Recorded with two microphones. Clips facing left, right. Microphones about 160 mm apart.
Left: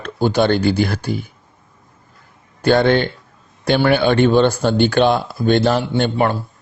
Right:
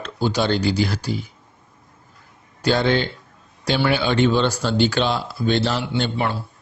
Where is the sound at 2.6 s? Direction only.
55° left (ahead or behind).